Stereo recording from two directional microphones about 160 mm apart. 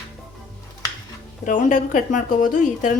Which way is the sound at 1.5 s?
50° left (ahead or behind).